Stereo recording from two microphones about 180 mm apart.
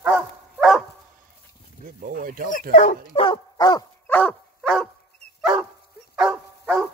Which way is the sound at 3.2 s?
25° left (ahead or behind).